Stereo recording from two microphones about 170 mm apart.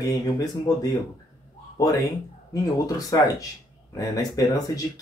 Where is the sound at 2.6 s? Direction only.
20° left (ahead or behind).